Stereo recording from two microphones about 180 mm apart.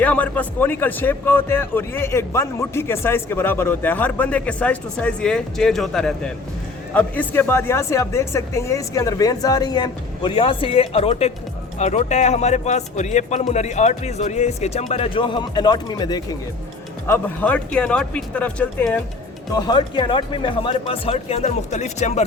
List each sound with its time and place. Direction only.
0.0 s speech: 10° left (ahead or behind)
17.1 s speech: 10° left (ahead or behind)
19.5 s speech: 25° left (ahead or behind); by 22.2 s 40° left (ahead or behind)